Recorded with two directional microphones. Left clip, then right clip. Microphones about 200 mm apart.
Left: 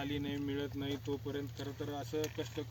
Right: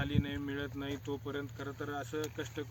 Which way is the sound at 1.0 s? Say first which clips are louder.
Even; 15° right (ahead or behind).